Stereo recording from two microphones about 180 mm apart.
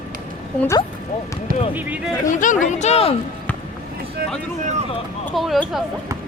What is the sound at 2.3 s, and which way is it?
Speech, 45° left (ahead or behind).